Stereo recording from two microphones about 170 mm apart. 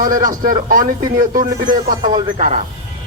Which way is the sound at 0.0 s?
50° right (ahead or behind).